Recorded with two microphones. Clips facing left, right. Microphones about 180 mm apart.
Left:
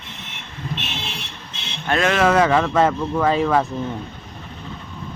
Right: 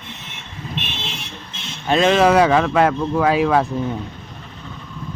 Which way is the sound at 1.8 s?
20° right (ahead or behind).